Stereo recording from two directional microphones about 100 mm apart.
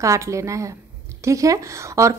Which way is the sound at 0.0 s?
30° right (ahead or behind).